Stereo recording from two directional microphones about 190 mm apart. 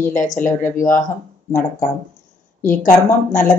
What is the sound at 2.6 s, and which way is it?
Speech, 45° left (ahead or behind).